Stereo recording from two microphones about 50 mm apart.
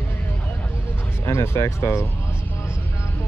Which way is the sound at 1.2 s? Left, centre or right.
Left.